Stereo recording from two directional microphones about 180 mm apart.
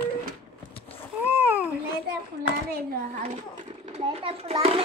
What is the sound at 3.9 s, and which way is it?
Speech, 30° right (ahead or behind).